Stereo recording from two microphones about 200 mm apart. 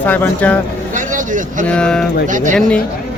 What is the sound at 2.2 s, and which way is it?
Speech, 40° right (ahead or behind).